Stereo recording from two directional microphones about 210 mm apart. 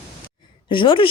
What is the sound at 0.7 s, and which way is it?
Speech, 25° left (ahead or behind).